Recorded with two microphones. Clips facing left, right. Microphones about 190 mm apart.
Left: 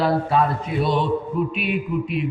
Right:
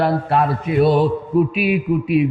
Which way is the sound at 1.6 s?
5° right (ahead or behind).